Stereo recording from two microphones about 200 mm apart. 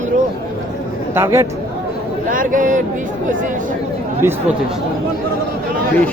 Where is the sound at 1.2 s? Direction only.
10° right (ahead or behind).